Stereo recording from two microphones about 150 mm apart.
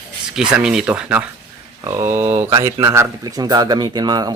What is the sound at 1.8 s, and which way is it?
A man's voice, 20° right (ahead or behind).